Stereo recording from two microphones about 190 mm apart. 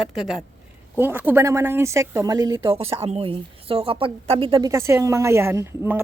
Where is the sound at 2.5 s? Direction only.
30° right (ahead or behind).